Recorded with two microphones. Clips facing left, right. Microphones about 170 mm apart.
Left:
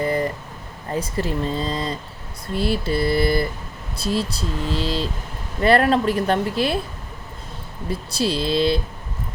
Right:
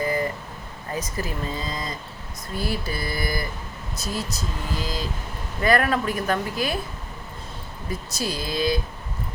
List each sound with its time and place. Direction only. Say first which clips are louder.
0.0 s a sound: left 3 dB; 30° left (ahead or behind)
0.9 s speech: left 5 dB; 30° left (ahead or behind)
7.9 s speech: left 6 dB; 30° left (ahead or behind)